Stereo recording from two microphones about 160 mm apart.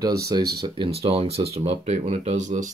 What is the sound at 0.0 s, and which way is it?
Speech, 25° right (ahead or behind).